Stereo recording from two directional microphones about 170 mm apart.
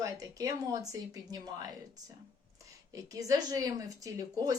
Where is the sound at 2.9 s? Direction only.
20° right (ahead or behind).